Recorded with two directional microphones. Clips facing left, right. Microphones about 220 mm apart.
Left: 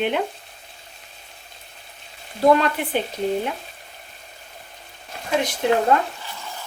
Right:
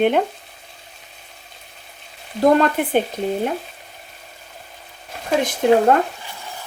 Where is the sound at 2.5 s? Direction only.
50° right (ahead or behind).